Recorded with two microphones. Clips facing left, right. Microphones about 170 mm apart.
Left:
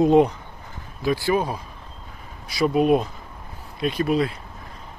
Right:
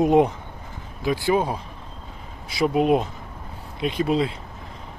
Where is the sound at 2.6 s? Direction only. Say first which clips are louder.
Left 1 dB; 20° right (ahead or behind).